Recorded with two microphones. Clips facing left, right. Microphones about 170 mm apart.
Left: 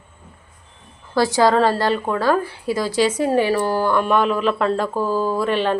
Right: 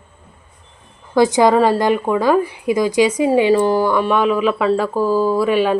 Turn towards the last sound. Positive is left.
turn(degrees=-10)  # may be behind; listen again after turning